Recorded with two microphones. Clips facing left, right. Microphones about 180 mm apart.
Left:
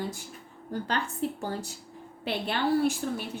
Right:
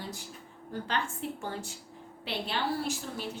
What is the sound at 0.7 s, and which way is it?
A woman's voice, 40° left (ahead or behind).